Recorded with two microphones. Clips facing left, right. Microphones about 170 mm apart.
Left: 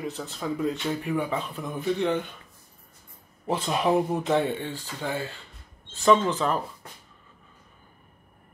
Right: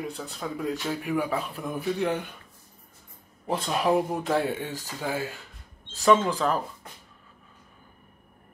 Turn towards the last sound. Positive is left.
turn(degrees=0)  # may be behind; listen again after turning